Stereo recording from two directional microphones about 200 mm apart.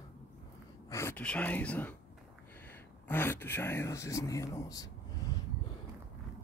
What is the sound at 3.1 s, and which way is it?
Speech, 10° left (ahead or behind).